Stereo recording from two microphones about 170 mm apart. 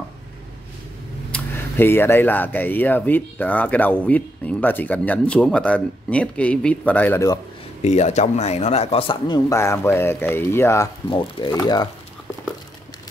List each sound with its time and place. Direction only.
1.3 s speech: 10° left (ahead or behind)
7.8 s a man's voice: 40° left (ahead or behind)
9.5 s speech: 15° left (ahead or behind)
11.1 s speech: 30° left (ahead or behind)